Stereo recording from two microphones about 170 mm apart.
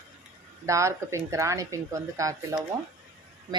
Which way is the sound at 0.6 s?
15° right (ahead or behind).